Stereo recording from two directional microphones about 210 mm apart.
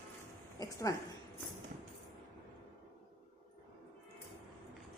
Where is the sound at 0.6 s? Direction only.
15° left (ahead or behind).